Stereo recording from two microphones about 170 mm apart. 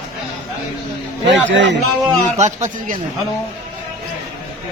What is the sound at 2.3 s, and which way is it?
Speech, 45° right (ahead or behind).